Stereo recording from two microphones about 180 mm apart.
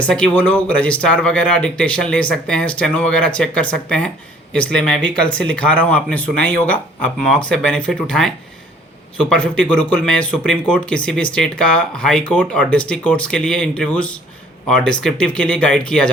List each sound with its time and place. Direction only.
0.0 s speech: 5° left (ahead or behind)
9.3 s speech: 5° left (ahead or behind)